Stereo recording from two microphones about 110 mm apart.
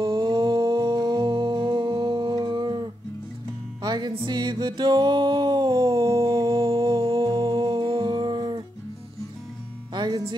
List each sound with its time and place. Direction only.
0.0 s music: 45° right (ahead or behind); by 6.6 s 30° right (ahead or behind)
7.0 s music: 55° right (ahead or behind)
7.2 s music: 35° right (ahead or behind)
9.9 s music: 40° right (ahead or behind)